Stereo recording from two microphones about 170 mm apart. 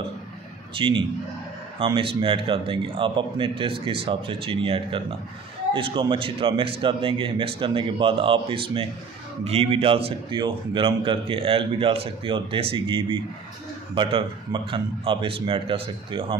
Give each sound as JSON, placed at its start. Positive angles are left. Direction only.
{"t": 0.7, "sound": "a man's voice", "side_deg": -30}